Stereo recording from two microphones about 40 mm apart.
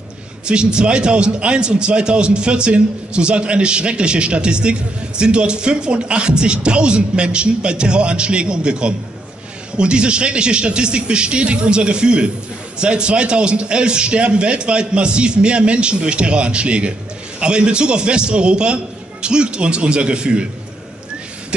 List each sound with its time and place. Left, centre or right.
0.5 s a man's voice: right